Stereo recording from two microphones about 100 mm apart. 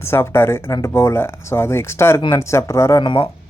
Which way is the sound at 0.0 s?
25° left (ahead or behind).